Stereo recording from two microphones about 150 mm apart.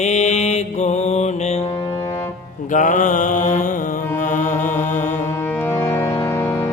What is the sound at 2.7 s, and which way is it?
Mantra, 60° left (ahead or behind).